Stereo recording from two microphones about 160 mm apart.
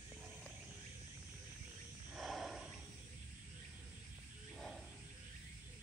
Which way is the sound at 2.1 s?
Centre (ahead or behind).